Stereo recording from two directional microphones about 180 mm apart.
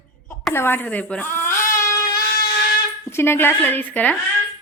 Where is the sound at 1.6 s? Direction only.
20° left (ahead or behind).